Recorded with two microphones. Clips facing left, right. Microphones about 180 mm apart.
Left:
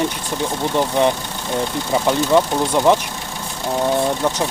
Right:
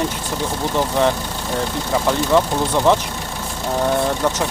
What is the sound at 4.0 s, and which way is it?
Speech, 10° left (ahead or behind).